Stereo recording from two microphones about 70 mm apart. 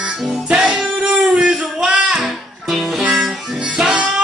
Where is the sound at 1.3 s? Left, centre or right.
Centre.